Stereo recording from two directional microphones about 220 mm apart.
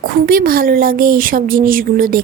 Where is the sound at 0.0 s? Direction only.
40° right (ahead or behind).